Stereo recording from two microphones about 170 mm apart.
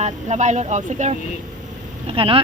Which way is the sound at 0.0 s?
45° right (ahead or behind).